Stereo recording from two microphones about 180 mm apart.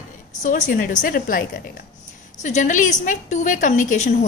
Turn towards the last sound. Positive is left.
turn(degrees=45)  # may be behind; listen again after turning